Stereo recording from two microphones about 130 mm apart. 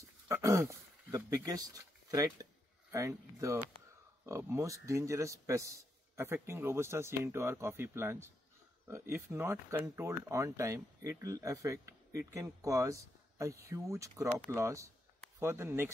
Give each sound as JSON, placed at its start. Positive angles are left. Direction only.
{"t": 0.3, "sound": "speech", "side_deg": -20}